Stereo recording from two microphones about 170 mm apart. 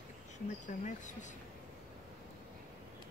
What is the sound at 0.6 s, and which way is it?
Speech, 45° left (ahead or behind).